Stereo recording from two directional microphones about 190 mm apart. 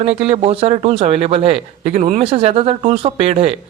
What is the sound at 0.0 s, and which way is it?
Speech, 30° right (ahead or behind).